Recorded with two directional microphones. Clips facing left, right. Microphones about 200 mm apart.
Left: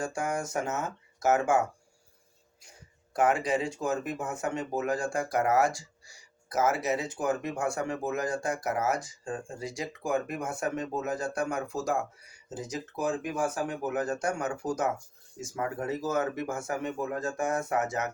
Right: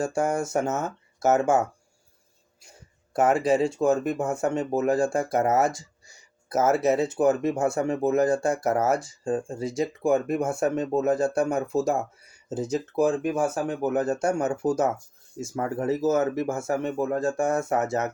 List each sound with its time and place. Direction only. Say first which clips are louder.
0.0 s speech: right 7 dB; 25° right (ahead or behind)
3.1 s speech: right 5 dB; 25° right (ahead or behind)
15.5 s speech: right 4 dB; 35° right (ahead or behind)
15.8 s speech: right 8 dB; 25° right (ahead or behind)